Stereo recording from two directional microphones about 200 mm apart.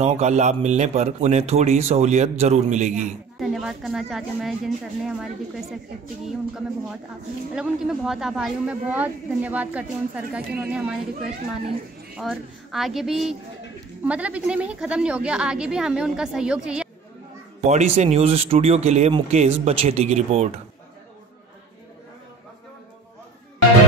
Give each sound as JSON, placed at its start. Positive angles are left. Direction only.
{"t": 0.0, "sound": "a man's voice", "side_deg": -35}
{"t": 3.3, "sound": "a woman's voice", "side_deg": 0}
{"t": 12.2, "sound": "a woman's voice", "side_deg": 0}
{"t": 17.6, "sound": "a man's voice", "side_deg": -35}